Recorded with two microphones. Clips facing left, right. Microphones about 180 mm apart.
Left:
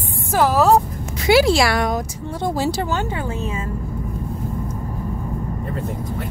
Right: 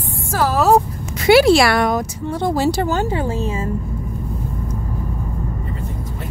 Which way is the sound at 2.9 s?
35° right (ahead or behind).